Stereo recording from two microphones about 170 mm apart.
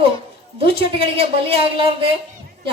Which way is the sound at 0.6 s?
30° right (ahead or behind).